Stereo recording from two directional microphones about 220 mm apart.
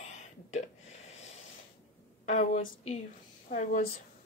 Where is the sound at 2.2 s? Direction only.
35° left (ahead or behind).